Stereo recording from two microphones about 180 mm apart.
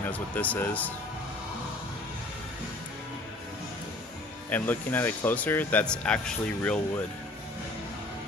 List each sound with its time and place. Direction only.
0.1 s speech: 10° left (ahead or behind)
4.5 s speech: 10° left (ahead or behind)